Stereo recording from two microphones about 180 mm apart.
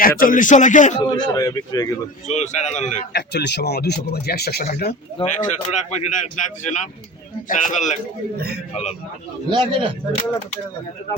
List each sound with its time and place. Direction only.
0.0 s a man's voice: 50° left (ahead or behind)
1.0 s speech: 20° left (ahead or behind)
2.2 s speech: 40° left (ahead or behind)
3.1 s speech: 70° left (ahead or behind)
5.2 s a man's voice: 45° left (ahead or behind)
9.5 s speech: 25° right (ahead or behind)